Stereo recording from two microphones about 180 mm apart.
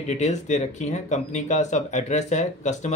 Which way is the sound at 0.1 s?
40° left (ahead or behind).